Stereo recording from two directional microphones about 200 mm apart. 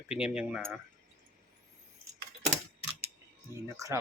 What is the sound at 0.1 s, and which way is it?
Speech, 5° right (ahead or behind).